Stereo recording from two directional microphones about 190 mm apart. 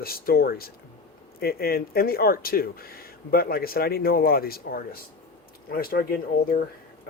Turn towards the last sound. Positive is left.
turn(degrees=50)  # may be behind; listen again after turning